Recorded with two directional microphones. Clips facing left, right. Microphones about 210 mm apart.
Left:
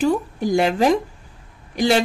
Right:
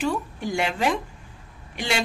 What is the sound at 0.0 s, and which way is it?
A woman's voice, 40° left (ahead or behind).